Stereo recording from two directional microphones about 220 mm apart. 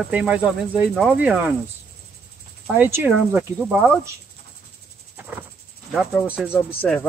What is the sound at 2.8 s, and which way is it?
Speech, 10° right (ahead or behind).